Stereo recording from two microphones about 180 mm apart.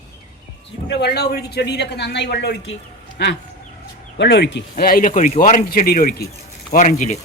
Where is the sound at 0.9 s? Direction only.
65° left (ahead or behind).